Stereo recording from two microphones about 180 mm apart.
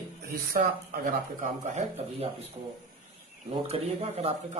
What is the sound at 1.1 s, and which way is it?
A man's voice, 45° right (ahead or behind).